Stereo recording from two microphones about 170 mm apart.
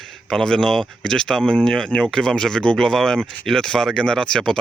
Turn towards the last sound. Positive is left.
turn(degrees=5)  # may be behind; listen again after turning